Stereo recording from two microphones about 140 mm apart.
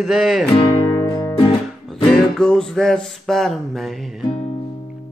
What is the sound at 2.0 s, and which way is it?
Music, 5° left (ahead or behind).